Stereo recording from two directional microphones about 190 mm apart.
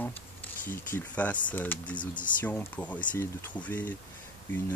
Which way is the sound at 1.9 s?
25° left (ahead or behind).